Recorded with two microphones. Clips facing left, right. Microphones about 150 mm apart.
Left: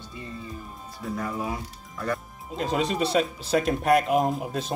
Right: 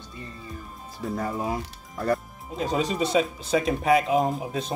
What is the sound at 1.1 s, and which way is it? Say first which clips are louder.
Speech: right 2 dB; 35° right (ahead or behind).